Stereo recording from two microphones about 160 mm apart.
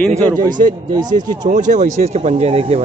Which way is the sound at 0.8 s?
25° right (ahead or behind).